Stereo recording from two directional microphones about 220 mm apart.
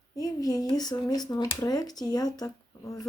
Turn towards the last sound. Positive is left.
turn(degrees=15)  # may be behind; listen again after turning